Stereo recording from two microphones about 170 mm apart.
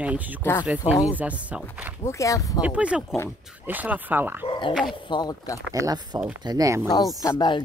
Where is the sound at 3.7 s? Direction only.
10° right (ahead or behind).